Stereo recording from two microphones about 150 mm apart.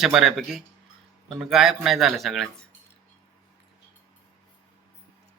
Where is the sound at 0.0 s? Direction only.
Centre (ahead or behind).